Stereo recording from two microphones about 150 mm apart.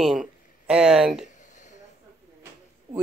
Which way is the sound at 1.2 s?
55° left (ahead or behind).